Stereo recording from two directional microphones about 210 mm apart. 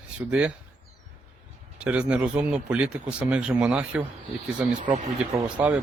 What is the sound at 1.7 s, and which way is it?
Speech, 5° right (ahead or behind).